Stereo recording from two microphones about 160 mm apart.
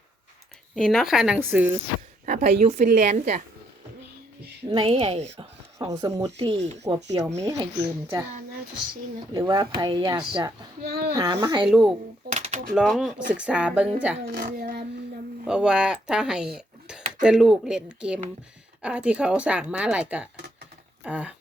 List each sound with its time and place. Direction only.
0.8 s a woman's voice: centre (ahead or behind)
2.2 s a woman's voice: 45° right (ahead or behind)
4.7 s a woman's voice: 35° right (ahead or behind)
5.9 s speech: 20° right (ahead or behind)
6.4 s a woman's voice: 40° right (ahead or behind)
7.4 s speech: 20° right (ahead or behind)
9.3 s speech: 25° right (ahead or behind)
10.8 s speech: 80° right
11.1 s speech: 20° right (ahead or behind)
11.6 s a woman's voice: 5° right (ahead or behind)
12.3 s a sound: 50° right (ahead or behind)
12.7 s a woman's voice: centre (ahead or behind)
14.3 s speech: 80° right
15.4 s a woman's voice: 5° right (ahead or behind)